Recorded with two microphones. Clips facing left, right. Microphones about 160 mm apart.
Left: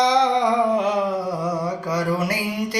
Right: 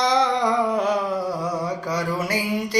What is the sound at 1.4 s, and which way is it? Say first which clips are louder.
Mantra: left 1 dB; centre (ahead or behind).